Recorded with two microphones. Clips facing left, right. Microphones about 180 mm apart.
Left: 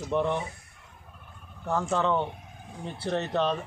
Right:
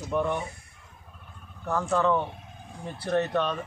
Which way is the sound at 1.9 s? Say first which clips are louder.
Right 3 dB; 25° left (ahead or behind).